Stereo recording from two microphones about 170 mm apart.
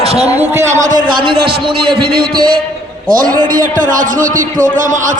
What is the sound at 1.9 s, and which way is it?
A man's voice, 65° right (ahead or behind).